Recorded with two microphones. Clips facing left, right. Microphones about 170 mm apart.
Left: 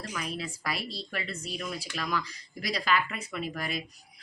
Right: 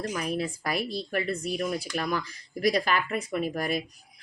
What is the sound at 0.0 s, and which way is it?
Speech, 45° right (ahead or behind).